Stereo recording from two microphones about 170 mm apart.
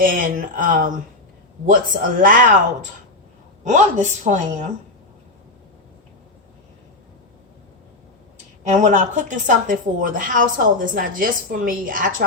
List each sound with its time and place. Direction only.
0.0 s speech: 55° right (ahead or behind)
3.6 s speech: 45° right (ahead or behind)
8.6 s speech: 45° right (ahead or behind)